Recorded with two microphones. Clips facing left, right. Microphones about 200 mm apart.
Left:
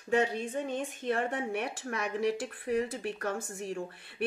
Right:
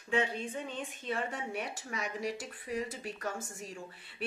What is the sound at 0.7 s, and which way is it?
A woman's voice, 55° left (ahead or behind).